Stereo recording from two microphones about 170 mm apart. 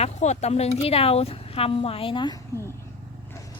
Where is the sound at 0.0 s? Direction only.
40° left (ahead or behind); by 2.6 s 25° left (ahead or behind).